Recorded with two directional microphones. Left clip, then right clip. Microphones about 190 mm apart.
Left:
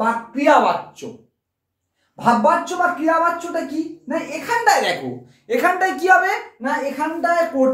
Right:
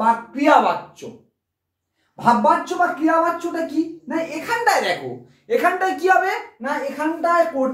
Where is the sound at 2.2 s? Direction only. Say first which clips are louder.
Even; 10° left (ahead or behind).